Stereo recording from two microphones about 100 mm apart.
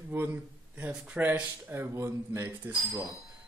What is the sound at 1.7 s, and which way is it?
Speech, 30° right (ahead or behind).